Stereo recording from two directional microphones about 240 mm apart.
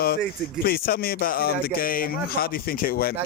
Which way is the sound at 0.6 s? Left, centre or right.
Left.